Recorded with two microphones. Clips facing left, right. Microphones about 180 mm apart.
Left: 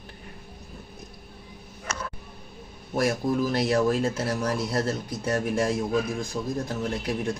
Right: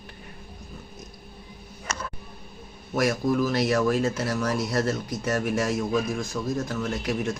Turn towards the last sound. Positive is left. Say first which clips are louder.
# right 1 dB
turn(degrees=30)  # may be behind; listen again after turning